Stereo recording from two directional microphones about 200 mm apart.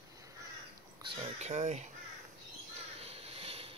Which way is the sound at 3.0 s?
30° right (ahead or behind).